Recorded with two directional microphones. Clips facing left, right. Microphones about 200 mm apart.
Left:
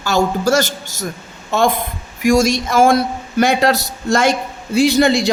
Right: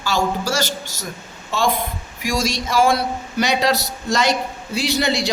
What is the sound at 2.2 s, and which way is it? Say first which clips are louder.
Speech: left 9 dB; 50° left (ahead or behind).